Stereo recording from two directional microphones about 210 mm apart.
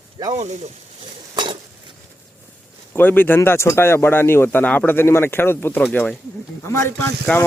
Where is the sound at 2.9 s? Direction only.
10° left (ahead or behind).